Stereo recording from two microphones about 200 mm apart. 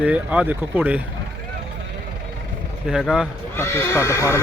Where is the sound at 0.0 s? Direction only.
5° right (ahead or behind).